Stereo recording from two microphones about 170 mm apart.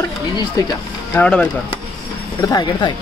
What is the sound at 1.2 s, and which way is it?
Speech, 5° left (ahead or behind).